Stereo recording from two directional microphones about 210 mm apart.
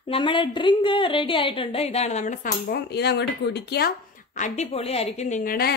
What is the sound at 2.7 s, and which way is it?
A woman's voice, 50° left (ahead or behind).